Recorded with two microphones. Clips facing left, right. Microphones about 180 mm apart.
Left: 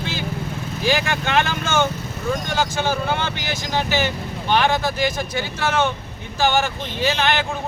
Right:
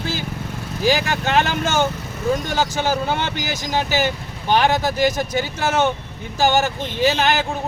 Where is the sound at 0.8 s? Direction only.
40° right (ahead or behind).